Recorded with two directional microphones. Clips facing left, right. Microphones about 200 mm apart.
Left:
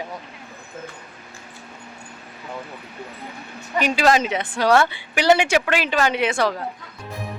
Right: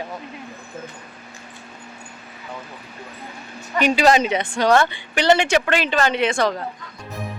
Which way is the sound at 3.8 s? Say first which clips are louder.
Right 2 dB; centre (ahead or behind).